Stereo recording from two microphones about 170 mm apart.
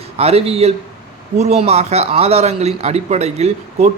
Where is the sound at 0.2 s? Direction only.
35° right (ahead or behind).